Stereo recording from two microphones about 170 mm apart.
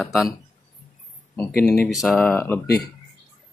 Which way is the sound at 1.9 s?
Centre (ahead or behind).